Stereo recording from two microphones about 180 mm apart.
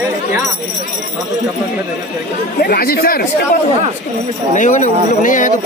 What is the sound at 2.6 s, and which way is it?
Speech, 55° left (ahead or behind).